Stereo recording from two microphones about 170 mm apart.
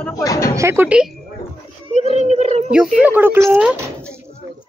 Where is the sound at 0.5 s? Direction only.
15° right (ahead or behind).